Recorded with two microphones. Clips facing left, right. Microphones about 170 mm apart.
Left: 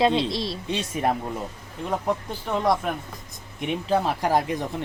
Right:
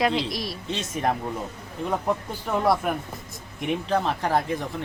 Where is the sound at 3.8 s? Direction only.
10° left (ahead or behind).